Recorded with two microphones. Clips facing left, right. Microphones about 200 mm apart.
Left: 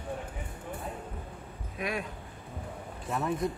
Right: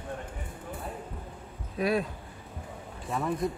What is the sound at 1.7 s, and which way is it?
Speech, 35° right (ahead or behind).